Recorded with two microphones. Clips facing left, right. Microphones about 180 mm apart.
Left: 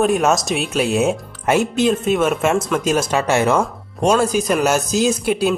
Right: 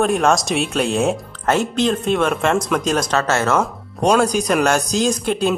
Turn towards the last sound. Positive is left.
turn(degrees=5)  # may be behind; listen again after turning